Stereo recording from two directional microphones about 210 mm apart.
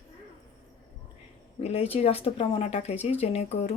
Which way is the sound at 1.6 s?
30° left (ahead or behind).